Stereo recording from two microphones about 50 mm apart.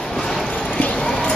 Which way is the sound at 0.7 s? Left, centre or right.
Left.